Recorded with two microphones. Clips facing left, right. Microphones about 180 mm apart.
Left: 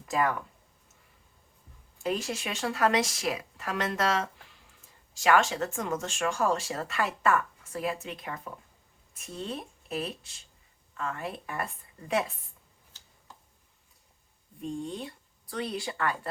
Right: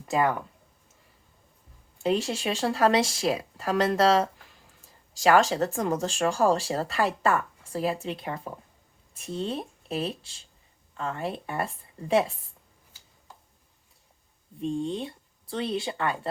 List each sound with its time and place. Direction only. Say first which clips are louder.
0.0 s speech: right 3 dB; 30° right (ahead or behind)
2.0 s speech: right 5 dB; 30° right (ahead or behind)
14.6 s speech: right 6 dB; 25° right (ahead or behind)